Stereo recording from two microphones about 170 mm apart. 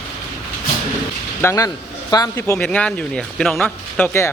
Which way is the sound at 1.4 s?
15° left (ahead or behind).